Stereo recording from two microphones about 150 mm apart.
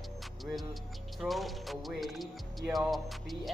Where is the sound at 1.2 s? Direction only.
Centre (ahead or behind).